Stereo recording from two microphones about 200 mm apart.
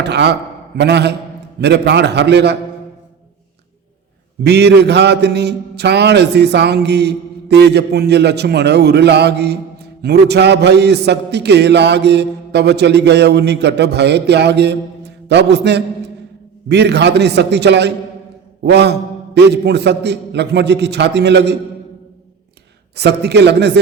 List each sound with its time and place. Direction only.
0.0 s a man's voice: 60° right (ahead or behind)
4.4 s a man's voice: 55° right (ahead or behind)
23.0 s a man's voice: 55° right (ahead or behind)